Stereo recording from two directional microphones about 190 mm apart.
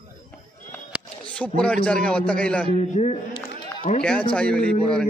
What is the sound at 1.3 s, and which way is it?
A man's voice, 5° left (ahead or behind).